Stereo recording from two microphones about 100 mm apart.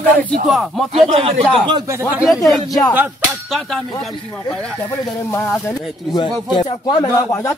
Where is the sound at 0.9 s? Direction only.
80° right.